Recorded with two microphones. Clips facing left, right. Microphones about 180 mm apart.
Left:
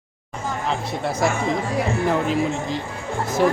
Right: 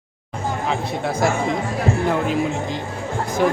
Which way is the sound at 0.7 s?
Centre (ahead or behind).